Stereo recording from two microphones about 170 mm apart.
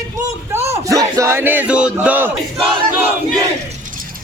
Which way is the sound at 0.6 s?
20° right (ahead or behind).